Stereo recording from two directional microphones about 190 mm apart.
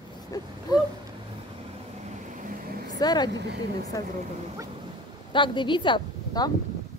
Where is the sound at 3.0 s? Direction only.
20° left (ahead or behind).